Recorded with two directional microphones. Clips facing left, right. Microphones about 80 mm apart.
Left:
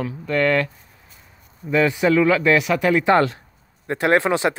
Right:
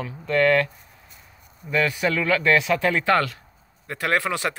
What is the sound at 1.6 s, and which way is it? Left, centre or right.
Speech, left.